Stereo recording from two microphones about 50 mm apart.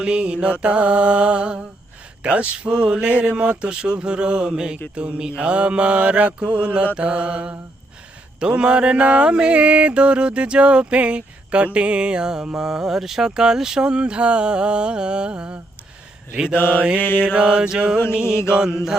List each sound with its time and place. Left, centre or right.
0.0 s mantra: right
17.0 s mantra: left
17.2 s mantra: right